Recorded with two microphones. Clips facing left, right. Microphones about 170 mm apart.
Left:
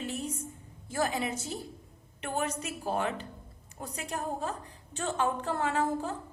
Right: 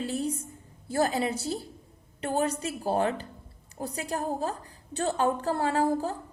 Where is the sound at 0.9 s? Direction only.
35° right (ahead or behind).